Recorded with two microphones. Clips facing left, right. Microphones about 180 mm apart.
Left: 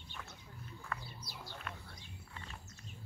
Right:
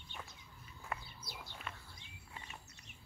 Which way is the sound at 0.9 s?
15° right (ahead or behind).